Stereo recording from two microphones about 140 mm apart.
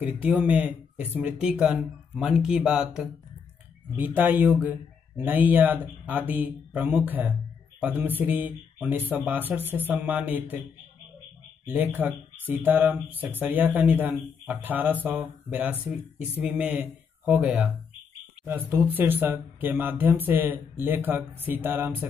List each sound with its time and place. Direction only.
0.2 s speech: 10° right (ahead or behind)
11.6 s speech: 10° right (ahead or behind)